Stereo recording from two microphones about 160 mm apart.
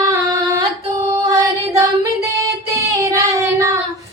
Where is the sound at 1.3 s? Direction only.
20° right (ahead or behind).